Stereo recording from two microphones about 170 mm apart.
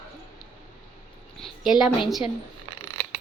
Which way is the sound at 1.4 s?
Centre (ahead or behind).